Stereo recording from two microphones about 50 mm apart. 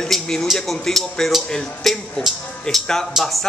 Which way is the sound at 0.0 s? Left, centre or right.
Centre.